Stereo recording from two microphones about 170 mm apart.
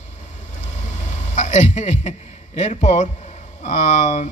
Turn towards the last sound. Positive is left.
turn(degrees=45)  # may be behind; listen again after turning